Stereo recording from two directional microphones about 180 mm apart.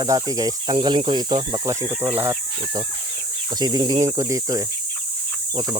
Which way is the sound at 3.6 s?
25° right (ahead or behind).